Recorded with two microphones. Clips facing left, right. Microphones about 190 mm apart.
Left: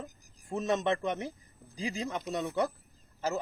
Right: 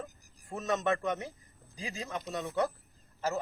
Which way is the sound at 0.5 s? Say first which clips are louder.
Left 2 dB; 30° left (ahead or behind).